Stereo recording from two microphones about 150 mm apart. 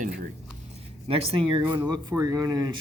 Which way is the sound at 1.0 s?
40° right (ahead or behind).